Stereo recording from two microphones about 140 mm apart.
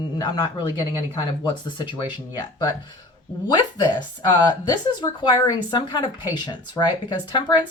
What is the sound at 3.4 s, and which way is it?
A woman's voice, 30° left (ahead or behind).